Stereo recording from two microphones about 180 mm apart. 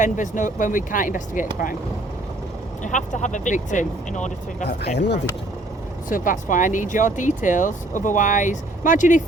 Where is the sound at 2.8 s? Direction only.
45° left (ahead or behind).